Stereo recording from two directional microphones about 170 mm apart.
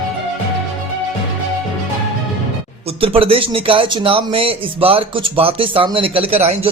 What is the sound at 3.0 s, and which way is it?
Speech, 35° right (ahead or behind).